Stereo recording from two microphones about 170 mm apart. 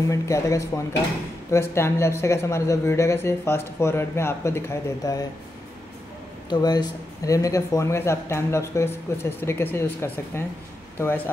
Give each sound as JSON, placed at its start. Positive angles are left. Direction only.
{"t": 0.1, "sound": "speech", "side_deg": 20}
{"t": 6.5, "sound": "speech", "side_deg": 25}